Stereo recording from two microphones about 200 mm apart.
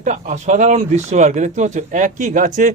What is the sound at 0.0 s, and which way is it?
Speech, 40° right (ahead or behind).